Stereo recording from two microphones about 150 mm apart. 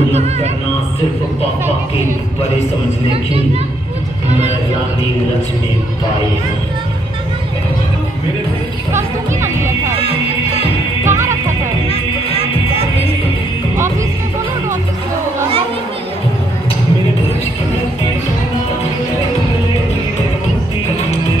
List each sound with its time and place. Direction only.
8.9 s music: 15° right (ahead or behind)
11.1 s music: 15° right (ahead or behind)